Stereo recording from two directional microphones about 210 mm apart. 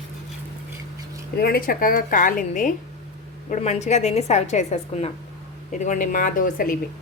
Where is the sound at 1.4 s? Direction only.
45° left (ahead or behind).